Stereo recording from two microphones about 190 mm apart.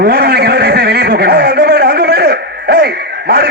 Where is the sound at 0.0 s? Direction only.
55° right (ahead or behind).